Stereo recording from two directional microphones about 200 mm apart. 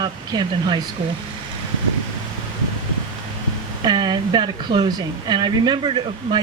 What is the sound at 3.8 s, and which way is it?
Speech, 20° right (ahead or behind).